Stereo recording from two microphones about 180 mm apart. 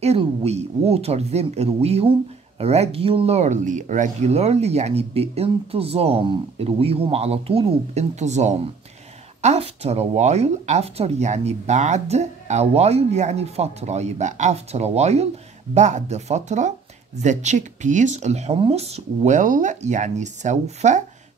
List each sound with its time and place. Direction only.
0.0 s speech: 35° right (ahead or behind)